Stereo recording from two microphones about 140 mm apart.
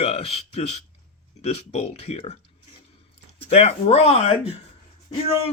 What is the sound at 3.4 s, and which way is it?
Speech, 50° left (ahead or behind).